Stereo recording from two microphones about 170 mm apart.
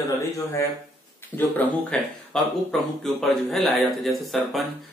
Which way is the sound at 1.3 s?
5° left (ahead or behind).